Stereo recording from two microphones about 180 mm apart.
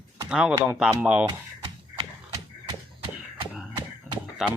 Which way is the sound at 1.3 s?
25° right (ahead or behind).